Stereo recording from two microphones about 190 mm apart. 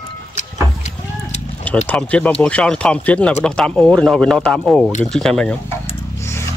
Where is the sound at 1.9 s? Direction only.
5° left (ahead or behind).